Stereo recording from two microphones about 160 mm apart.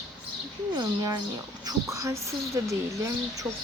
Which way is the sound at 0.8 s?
20° right (ahead or behind).